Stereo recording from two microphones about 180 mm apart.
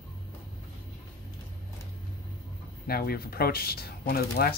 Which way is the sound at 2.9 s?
55° left (ahead or behind).